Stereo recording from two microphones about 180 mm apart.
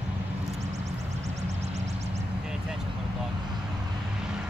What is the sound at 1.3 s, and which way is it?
Music, 35° right (ahead or behind).